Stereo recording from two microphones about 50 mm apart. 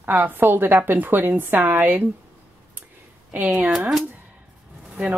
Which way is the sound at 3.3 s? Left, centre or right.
Right.